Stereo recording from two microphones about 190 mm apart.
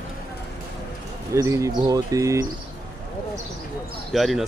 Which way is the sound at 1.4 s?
15° right (ahead or behind).